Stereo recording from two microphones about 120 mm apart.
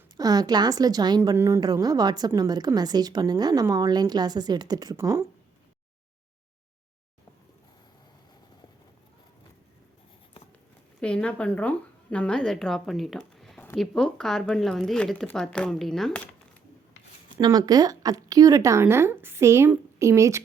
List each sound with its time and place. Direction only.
0.2 s a woman's voice: 35° right (ahead or behind)
1.4 s a woman's voice: 20° right (ahead or behind)
1.6 s a woman's voice: 30° right (ahead or behind)
4.9 s a woman's voice: 20° right (ahead or behind)
11.0 s speech: 10° left (ahead or behind)
17.3 s a woman's voice: 30° right (ahead or behind)